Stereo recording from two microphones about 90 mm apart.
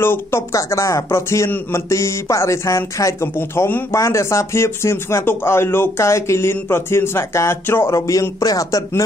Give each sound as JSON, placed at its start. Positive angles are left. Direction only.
{"t": 0.0, "sound": "speech", "side_deg": 25}
{"t": 8.1, "sound": "speech", "side_deg": 40}